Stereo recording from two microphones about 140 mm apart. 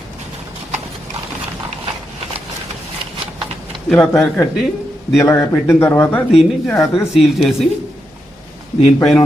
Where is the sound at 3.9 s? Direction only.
10° left (ahead or behind).